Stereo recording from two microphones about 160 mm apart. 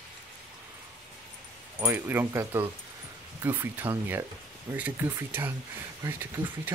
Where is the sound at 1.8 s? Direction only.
15° right (ahead or behind).